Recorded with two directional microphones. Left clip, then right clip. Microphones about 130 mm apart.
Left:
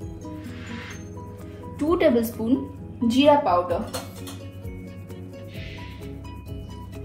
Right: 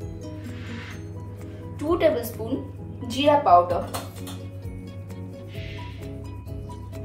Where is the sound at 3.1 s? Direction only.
50° left (ahead or behind).